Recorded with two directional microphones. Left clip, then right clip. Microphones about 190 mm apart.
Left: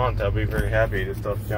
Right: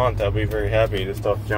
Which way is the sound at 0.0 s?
35° right (ahead or behind).